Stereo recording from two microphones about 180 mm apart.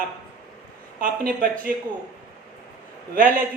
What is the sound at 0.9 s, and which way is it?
Speech, 50° right (ahead or behind).